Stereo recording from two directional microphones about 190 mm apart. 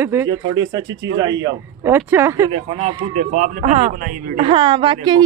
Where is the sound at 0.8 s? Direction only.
85° right.